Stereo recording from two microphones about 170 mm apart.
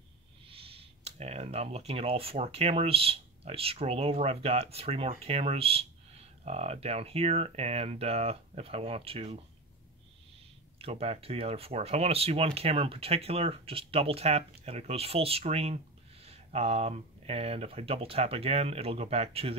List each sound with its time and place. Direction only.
0.5 s speech: 35° right (ahead or behind)
10.8 s speech: 35° right (ahead or behind)